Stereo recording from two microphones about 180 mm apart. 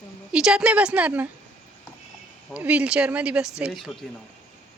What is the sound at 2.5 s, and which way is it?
Speech, 10° right (ahead or behind).